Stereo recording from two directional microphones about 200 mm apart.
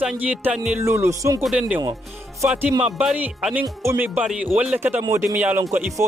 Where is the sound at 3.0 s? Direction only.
5° right (ahead or behind).